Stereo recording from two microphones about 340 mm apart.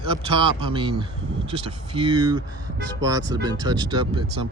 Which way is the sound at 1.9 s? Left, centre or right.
Centre.